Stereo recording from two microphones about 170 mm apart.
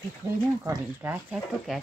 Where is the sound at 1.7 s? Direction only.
Centre (ahead or behind).